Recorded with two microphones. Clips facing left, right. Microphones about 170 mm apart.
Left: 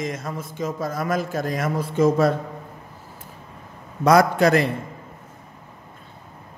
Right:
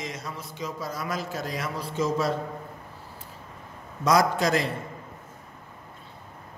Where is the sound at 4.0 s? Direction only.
60° left (ahead or behind).